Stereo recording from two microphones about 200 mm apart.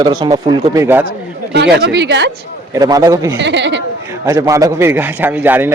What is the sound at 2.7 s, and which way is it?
Speech, 20° right (ahead or behind).